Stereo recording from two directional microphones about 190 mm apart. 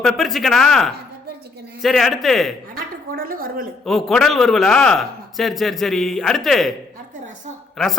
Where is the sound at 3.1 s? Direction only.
50° right (ahead or behind).